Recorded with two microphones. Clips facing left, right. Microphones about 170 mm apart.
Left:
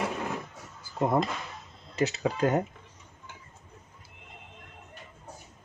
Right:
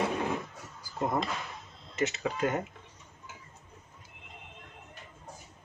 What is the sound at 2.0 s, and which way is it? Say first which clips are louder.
Speech: left 3 dB; 35° left (ahead or behind).